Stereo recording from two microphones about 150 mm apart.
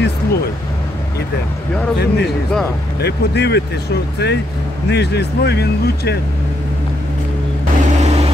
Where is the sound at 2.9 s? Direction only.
90° left.